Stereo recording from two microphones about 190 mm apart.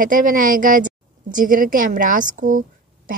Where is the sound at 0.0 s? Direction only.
45° right (ahead or behind).